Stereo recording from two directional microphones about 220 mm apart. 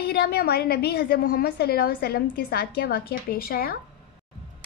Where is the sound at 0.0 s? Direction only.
45° left (ahead or behind).